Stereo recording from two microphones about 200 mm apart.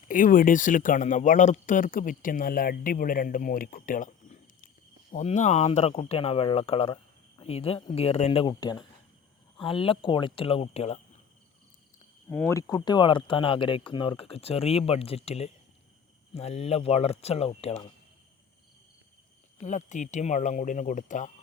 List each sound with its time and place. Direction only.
0.1 s speech: 40° left (ahead or behind)
12.3 s speech: 10° left (ahead or behind); by 17.9 s 30° left (ahead or behind)
19.5 s speech: 35° left (ahead or behind)